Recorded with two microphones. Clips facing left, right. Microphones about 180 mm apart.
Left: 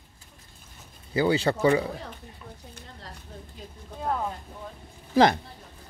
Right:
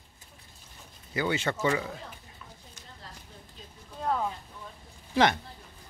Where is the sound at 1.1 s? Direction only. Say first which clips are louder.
Left 6 dB; 30° left (ahead or behind).